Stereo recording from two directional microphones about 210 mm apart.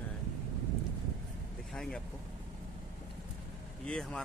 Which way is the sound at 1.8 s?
5° left (ahead or behind).